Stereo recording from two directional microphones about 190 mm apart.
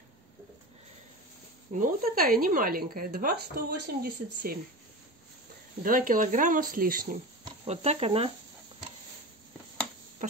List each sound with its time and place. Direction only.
1.7 s speech: 45° right (ahead or behind)
5.8 s speech: 45° right (ahead or behind)
7.4 s speech: 35° right (ahead or behind)